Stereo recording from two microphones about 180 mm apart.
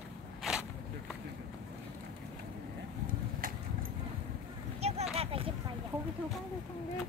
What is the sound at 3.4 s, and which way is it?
Vehicle, 50° right (ahead or behind).